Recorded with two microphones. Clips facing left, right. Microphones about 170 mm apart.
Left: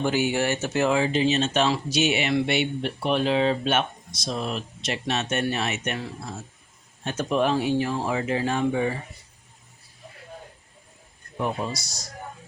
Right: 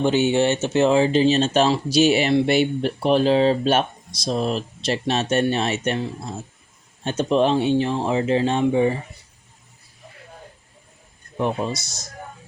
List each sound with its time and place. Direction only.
0.0 s speech: 25° right (ahead or behind)
11.3 s speech: 20° right (ahead or behind)